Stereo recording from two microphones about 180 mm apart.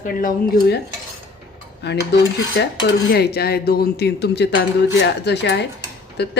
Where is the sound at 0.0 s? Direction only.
50° left (ahead or behind).